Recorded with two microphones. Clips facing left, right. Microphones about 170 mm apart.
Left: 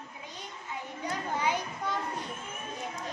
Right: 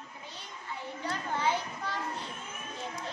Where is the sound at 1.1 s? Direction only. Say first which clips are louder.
Even; 15° left (ahead or behind).